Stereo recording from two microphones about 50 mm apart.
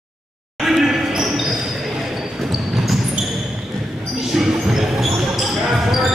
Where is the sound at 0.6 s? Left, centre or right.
Centre.